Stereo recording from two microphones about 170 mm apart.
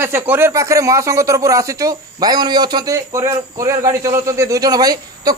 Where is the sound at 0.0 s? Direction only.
15° right (ahead or behind).